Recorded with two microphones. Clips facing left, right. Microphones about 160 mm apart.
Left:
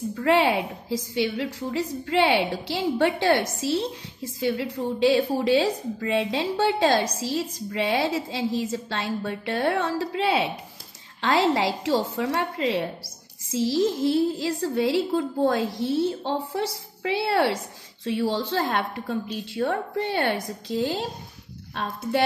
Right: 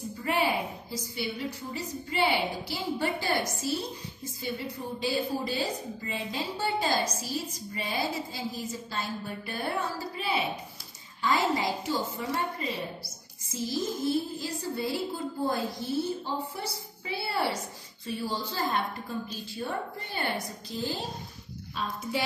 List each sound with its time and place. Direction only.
0.1 s a woman's voice: 75° left (ahead or behind)
21.7 s a woman's voice: 65° left (ahead or behind)